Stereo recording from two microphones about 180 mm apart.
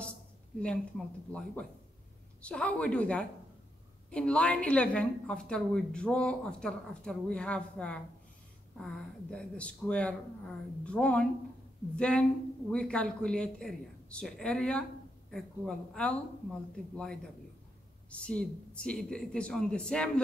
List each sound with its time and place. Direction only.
0.6 s a woman's voice: 5° left (ahead or behind)